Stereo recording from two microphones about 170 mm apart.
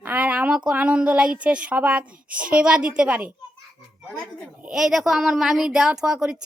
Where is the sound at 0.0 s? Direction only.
10° right (ahead or behind).